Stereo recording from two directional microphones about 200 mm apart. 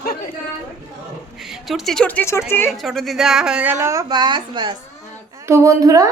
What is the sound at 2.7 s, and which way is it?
A woman's voice, centre (ahead or behind).